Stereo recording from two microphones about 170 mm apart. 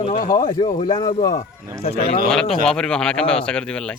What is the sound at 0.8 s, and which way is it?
Speech, 25° left (ahead or behind).